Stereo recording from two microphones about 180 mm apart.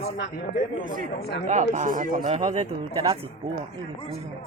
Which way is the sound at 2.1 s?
30° right (ahead or behind).